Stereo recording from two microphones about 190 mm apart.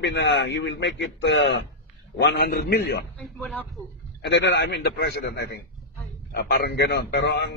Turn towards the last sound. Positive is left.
turn(degrees=65)  # may be behind; listen again after turning